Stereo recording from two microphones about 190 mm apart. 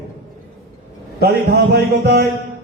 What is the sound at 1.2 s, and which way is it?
A man's voice, 55° right (ahead or behind).